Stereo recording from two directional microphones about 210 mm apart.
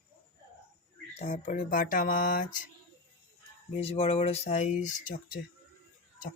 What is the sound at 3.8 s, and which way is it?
Speech, 30° left (ahead or behind).